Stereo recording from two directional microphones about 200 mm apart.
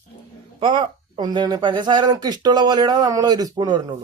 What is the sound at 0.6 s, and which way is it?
Speech, 25° right (ahead or behind).